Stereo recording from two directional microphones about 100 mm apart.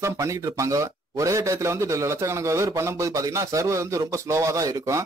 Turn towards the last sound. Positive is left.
turn(degrees=-35)  # may be behind; listen again after turning